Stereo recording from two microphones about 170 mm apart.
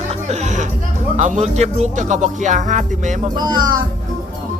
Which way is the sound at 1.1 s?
45° right (ahead or behind).